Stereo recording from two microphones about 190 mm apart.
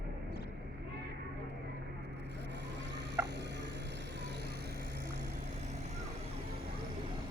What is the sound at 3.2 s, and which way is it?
Fowl, 10° right (ahead or behind).